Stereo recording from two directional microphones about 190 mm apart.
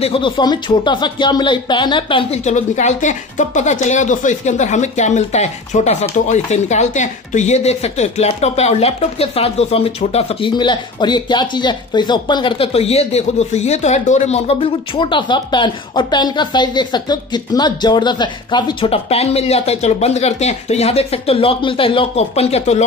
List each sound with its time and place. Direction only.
0.0 s speech: 25° left (ahead or behind)